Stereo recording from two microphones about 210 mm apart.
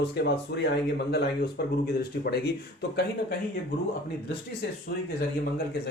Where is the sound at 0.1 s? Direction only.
55° left (ahead or behind).